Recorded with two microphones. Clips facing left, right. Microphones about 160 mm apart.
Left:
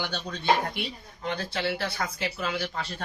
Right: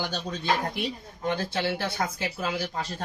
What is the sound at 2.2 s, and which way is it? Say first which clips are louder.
Speech: right 1 dB; 10° right (ahead or behind).